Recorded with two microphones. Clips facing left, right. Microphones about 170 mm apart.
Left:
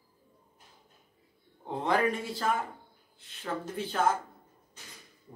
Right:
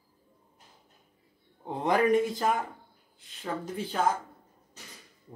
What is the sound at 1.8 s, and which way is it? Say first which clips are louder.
Speech: right 5 dB; 15° right (ahead or behind).